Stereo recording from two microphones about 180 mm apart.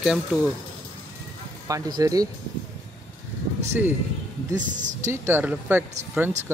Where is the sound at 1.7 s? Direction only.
20° right (ahead or behind).